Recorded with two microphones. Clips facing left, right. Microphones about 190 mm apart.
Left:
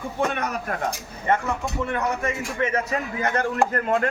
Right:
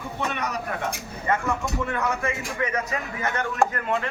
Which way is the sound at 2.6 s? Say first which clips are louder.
Left 4 dB; 30° left (ahead or behind).